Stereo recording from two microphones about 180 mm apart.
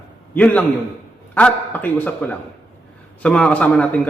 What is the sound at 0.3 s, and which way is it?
A man's voice, 10° left (ahead or behind).